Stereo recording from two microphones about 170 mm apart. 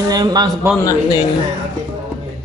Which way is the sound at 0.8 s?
20° left (ahead or behind).